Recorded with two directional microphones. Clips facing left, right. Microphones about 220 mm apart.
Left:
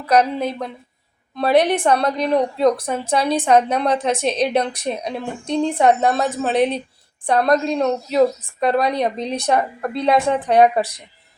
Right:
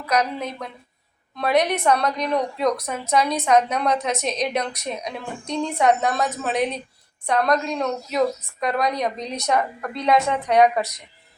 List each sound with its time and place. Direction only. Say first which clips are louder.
0.0 s a woman's voice: left 6 dB; 30° left (ahead or behind)